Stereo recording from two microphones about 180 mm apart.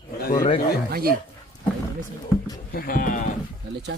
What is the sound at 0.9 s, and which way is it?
Speech, 55° right (ahead or behind).